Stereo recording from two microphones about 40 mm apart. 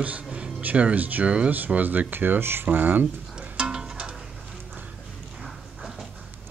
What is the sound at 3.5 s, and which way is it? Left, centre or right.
Music, right.